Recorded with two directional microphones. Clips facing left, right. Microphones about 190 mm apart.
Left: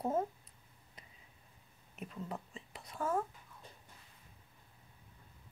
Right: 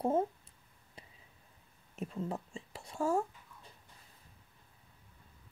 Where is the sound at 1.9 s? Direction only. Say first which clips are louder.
Right 5 dB; 30° right (ahead or behind).